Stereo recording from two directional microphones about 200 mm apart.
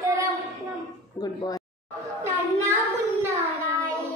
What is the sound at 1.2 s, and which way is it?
Speech, 20° left (ahead or behind).